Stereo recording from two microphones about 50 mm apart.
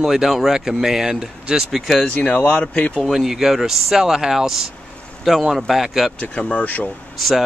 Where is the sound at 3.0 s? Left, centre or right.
Centre.